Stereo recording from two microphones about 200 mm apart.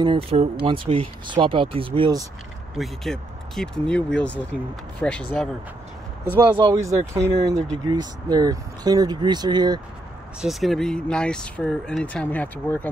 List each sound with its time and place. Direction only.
0.0 s speech: 25° right (ahead or behind)
2.7 s speech: centre (ahead or behind)
6.5 s speech: 20° right (ahead or behind)
10.4 s speech: centre (ahead or behind)